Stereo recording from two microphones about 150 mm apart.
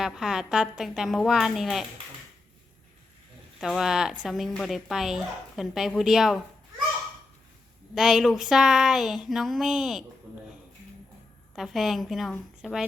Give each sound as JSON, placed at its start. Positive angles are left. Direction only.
{"t": 0.0, "sound": "speech", "side_deg": 0}
{"t": 3.6, "sound": "speech", "side_deg": 0}
{"t": 7.9, "sound": "speech", "side_deg": -5}
{"t": 11.5, "sound": "speech", "side_deg": 0}